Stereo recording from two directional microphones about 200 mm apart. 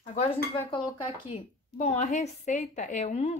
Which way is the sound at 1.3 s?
35° left (ahead or behind).